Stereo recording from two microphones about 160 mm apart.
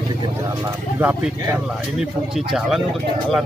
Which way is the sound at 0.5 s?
10° right (ahead or behind).